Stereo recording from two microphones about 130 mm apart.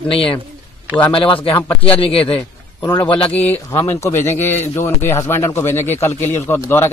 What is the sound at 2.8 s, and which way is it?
Speech, 25° left (ahead or behind).